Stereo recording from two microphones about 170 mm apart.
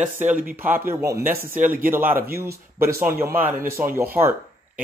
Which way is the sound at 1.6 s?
50° right (ahead or behind).